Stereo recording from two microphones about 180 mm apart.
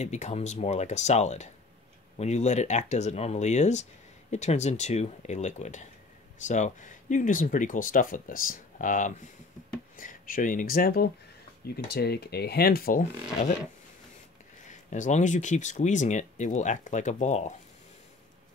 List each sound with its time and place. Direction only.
0.0 s speech: 40° left (ahead or behind)
14.6 s speech: 45° left (ahead or behind)